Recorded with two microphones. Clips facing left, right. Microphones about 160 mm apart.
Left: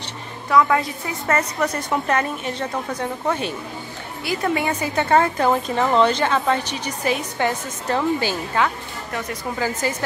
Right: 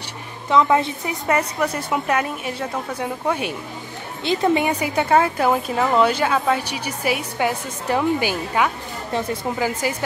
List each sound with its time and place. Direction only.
0.5 s a woman's voice: 20° right (ahead or behind)
1.6 s a woman's voice: 5° right (ahead or behind)
4.2 s a woman's voice: 20° right (ahead or behind)
9.1 s a woman's voice: 30° right (ahead or behind)
9.6 s a woman's voice: 10° right (ahead or behind)